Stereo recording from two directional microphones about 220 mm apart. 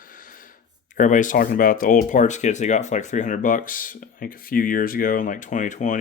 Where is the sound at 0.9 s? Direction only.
35° left (ahead or behind).